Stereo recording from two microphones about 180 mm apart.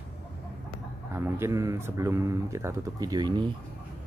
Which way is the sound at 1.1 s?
15° right (ahead or behind).